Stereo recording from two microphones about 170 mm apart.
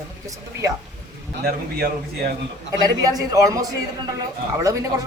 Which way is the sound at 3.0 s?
20° right (ahead or behind).